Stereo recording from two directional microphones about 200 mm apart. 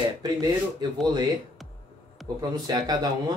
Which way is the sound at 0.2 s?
20° right (ahead or behind).